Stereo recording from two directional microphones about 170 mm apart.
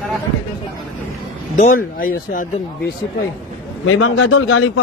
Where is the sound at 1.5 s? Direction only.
45° left (ahead or behind).